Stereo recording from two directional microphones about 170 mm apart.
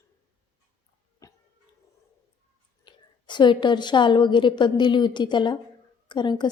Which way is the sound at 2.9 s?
25° left (ahead or behind).